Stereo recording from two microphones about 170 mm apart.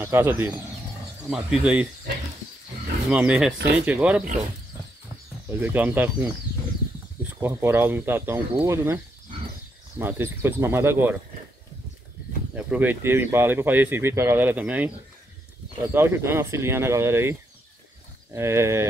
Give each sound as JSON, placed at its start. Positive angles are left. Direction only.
{"t": 0.0, "sound": "speech", "side_deg": -15}
{"t": 3.1, "sound": "speech", "side_deg": -5}
{"t": 5.5, "sound": "speech", "side_deg": -10}
{"t": 7.3, "sound": "speech", "side_deg": -15}
{"t": 12.5, "sound": "speech", "side_deg": -10}
{"t": 15.9, "sound": "speech", "side_deg": -15}